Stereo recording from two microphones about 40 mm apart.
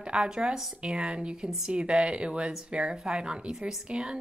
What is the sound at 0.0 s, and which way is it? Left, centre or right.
A woman's voice, right.